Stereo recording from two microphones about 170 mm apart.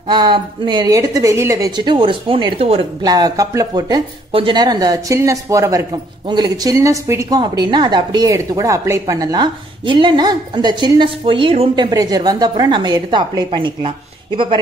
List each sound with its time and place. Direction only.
0.1 s speech: 25° right (ahead or behind)